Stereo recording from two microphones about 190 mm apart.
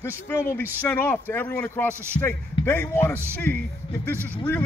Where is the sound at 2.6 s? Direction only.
10° left (ahead or behind).